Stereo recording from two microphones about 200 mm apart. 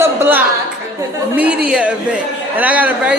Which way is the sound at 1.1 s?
5° right (ahead or behind).